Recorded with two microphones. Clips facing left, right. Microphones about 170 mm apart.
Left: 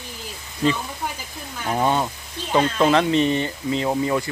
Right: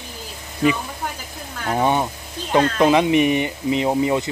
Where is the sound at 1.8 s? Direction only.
15° right (ahead or behind).